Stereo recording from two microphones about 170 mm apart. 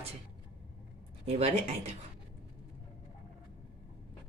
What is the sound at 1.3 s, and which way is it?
Speech, 40° right (ahead or behind).